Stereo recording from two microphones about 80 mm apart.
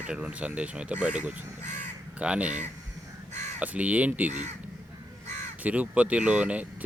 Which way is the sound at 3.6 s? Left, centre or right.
Centre.